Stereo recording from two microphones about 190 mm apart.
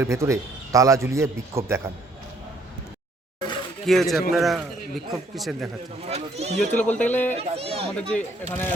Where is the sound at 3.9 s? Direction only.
Centre (ahead or behind).